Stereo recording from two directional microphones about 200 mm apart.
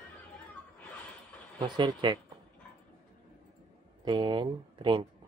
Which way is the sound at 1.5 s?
20° right (ahead or behind).